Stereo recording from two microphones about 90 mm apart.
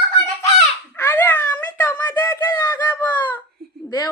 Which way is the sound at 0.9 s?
25° left (ahead or behind).